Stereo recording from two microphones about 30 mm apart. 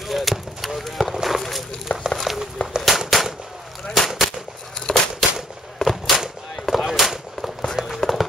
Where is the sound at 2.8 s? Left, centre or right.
Centre.